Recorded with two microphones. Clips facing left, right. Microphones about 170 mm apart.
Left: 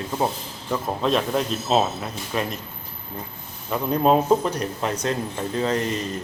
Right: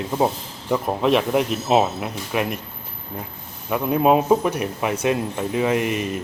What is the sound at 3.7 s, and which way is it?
Speech, 10° right (ahead or behind).